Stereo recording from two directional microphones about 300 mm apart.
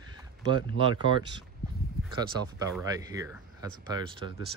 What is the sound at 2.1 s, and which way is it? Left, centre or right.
Speech, centre.